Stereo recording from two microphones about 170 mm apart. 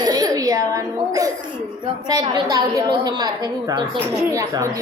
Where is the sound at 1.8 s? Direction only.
25° right (ahead or behind).